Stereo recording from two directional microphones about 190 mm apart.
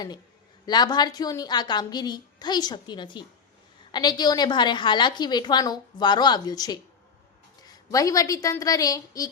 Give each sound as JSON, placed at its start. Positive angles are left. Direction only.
{"t": 0.6, "sound": "a woman's voice", "side_deg": 20}
{"t": 7.9, "sound": "a woman's voice", "side_deg": 15}